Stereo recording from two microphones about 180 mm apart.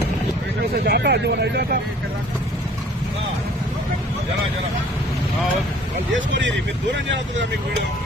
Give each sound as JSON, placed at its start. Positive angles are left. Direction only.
{"t": 0.8, "sound": "speech", "side_deg": -65}
{"t": 6.1, "sound": "speech", "side_deg": -90}